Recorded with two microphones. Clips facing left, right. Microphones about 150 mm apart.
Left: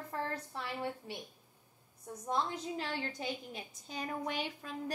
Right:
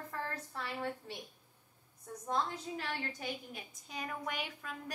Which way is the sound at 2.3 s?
20° left (ahead or behind).